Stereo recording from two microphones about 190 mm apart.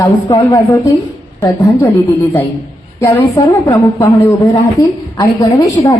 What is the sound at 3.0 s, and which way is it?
A woman's voice, 15° left (ahead or behind).